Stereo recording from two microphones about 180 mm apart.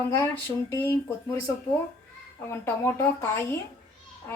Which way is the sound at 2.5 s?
15° left (ahead or behind).